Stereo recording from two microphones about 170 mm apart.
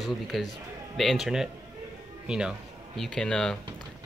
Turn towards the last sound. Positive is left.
turn(degrees=5)  # may be behind; listen again after turning